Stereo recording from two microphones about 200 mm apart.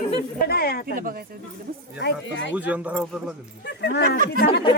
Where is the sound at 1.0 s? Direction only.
45° right (ahead or behind).